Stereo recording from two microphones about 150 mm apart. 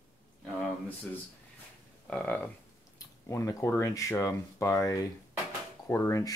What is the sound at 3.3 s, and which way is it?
Speech, 20° left (ahead or behind).